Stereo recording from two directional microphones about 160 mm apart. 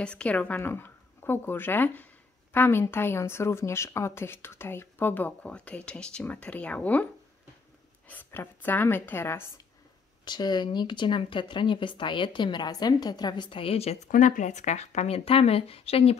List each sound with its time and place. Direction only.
0.0 s a woman's voice: 5° left (ahead or behind)
8.1 s a woman's voice: 10° left (ahead or behind)
10.2 s speech: 25° left (ahead or behind)
14.0 s speech: 50° left (ahead or behind)